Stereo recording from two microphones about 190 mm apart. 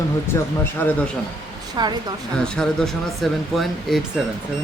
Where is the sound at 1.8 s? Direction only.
25° right (ahead or behind).